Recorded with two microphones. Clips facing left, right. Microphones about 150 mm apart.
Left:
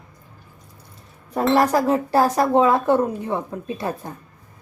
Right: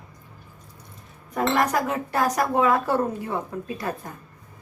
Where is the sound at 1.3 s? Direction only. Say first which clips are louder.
Left 5 dB; 30° left (ahead or behind).